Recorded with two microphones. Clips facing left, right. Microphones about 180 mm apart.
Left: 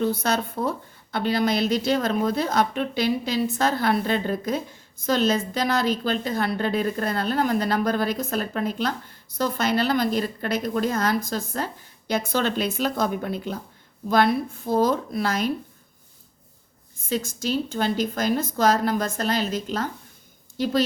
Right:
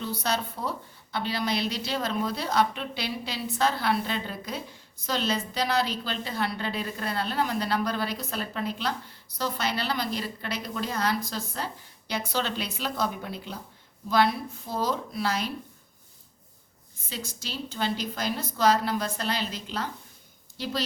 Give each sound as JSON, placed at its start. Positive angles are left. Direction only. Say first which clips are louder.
{"t": 0.0, "sound": "a woman's voice", "louder": "left 6 dB", "side_deg": 50}
{"t": 17.1, "sound": "a woman's voice", "louder": "left 12 dB", "side_deg": 50}